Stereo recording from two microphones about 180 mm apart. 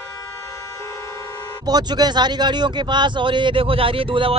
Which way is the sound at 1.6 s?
20° right (ahead or behind).